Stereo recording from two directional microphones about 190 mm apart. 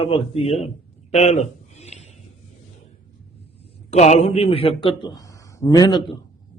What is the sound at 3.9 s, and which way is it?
A man's voice, 35° left (ahead or behind).